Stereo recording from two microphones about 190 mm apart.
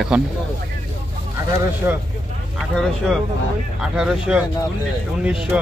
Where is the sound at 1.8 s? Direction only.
15° right (ahead or behind).